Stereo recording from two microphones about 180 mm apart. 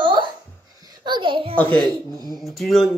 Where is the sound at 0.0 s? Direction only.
25° right (ahead or behind).